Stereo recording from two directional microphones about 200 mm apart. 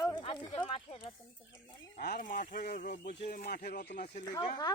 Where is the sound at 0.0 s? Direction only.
20° left (ahead or behind).